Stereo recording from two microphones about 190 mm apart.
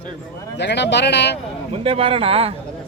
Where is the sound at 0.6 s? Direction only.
65° left (ahead or behind).